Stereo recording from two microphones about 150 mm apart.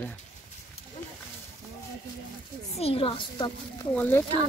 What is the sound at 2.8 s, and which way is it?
Speech, 40° left (ahead or behind).